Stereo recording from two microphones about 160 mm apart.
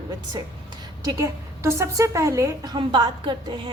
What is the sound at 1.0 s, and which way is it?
A woman's voice, 20° right (ahead or behind).